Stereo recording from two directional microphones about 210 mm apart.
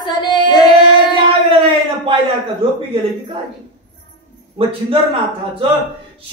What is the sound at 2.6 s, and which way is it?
Speech, 25° right (ahead or behind).